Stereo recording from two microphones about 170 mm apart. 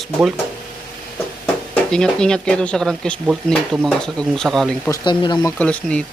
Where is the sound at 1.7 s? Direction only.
5° left (ahead or behind).